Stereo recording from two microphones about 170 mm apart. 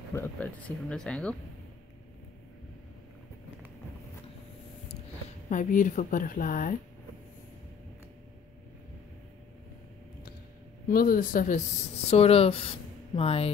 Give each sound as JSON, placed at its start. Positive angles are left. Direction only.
{"t": 0.1, "sound": "speech", "side_deg": 10}
{"t": 5.5, "sound": "speech", "side_deg": 50}
{"t": 10.9, "sound": "speech", "side_deg": 55}
{"t": 12.1, "sound": "a woman's voice", "side_deg": 35}